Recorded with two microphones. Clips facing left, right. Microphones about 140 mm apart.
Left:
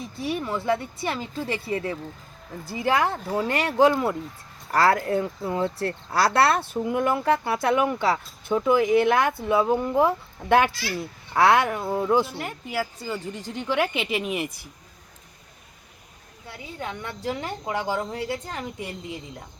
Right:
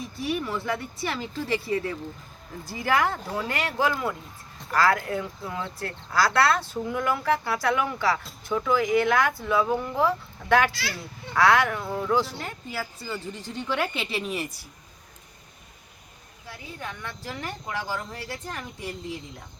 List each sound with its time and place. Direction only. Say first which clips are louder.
0.2 s a woman's voice: left 1 dB; 25° left (ahead or behind)
16.8 s speech: left 7 dB; 20° left (ahead or behind)